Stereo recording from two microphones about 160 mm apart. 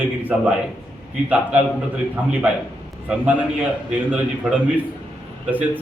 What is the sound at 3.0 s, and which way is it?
A man's voice, 10° right (ahead or behind).